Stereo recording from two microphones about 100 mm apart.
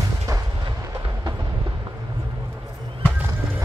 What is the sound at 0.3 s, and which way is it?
Artillery fire, 30° right (ahead or behind).